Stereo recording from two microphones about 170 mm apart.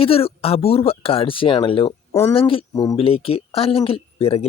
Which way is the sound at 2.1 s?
15° left (ahead or behind).